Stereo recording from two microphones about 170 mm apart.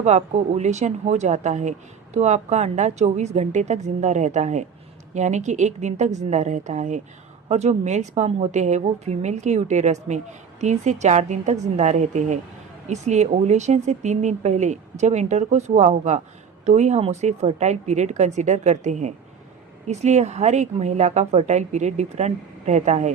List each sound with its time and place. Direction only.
0.0 s speech: 40° right (ahead or behind)